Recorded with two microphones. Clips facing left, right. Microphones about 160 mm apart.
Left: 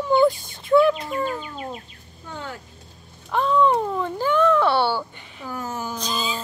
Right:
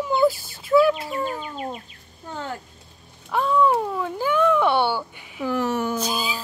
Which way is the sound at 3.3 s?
10° right (ahead or behind).